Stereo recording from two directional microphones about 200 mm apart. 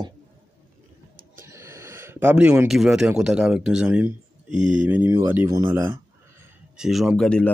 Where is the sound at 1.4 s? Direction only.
15° right (ahead or behind).